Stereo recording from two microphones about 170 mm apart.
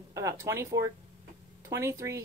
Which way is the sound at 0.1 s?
20° right (ahead or behind).